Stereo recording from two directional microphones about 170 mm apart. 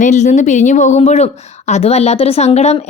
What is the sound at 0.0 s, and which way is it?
A woman's voice, 45° left (ahead or behind).